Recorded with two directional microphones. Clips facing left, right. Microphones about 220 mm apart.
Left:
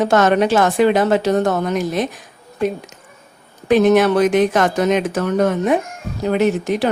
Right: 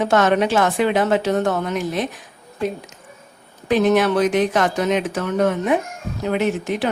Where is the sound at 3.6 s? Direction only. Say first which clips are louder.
Left 4 dB; 45° left (ahead or behind).